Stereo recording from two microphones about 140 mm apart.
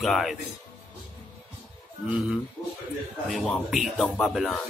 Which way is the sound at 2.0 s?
10° right (ahead or behind).